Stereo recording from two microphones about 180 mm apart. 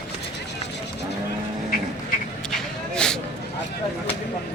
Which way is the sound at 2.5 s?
5° left (ahead or behind).